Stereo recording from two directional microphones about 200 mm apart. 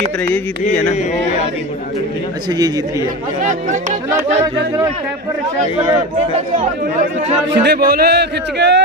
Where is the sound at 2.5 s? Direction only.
20° right (ahead or behind).